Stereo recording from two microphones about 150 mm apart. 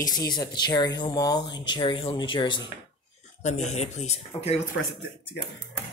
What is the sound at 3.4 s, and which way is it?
Speech, 50° left (ahead or behind).